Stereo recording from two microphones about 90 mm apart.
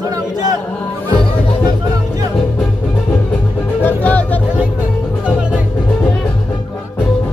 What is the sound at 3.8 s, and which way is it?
Music, 20° left (ahead or behind).